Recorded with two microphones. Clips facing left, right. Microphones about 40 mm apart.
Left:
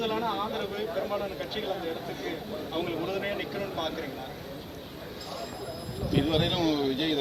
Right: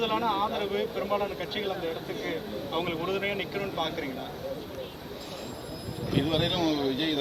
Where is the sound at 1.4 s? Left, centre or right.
Right.